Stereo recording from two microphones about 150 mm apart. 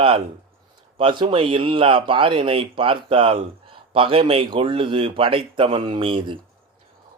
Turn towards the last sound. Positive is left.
turn(degrees=-35)  # may be behind; listen again after turning